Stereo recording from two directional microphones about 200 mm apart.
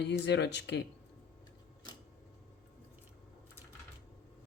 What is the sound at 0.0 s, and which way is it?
Speech, 60° left (ahead or behind).